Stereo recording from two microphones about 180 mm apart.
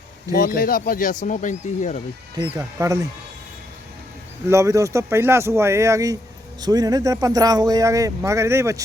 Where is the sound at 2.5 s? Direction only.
15° right (ahead or behind).